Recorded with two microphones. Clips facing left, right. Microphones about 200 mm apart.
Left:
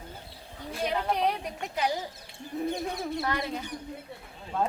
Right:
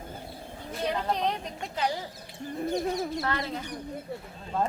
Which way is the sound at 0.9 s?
10° left (ahead or behind).